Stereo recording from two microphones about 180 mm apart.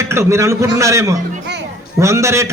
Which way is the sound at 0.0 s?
15° right (ahead or behind).